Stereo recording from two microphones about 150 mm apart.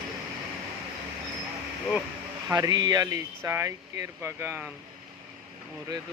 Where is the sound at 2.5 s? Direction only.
25° right (ahead or behind).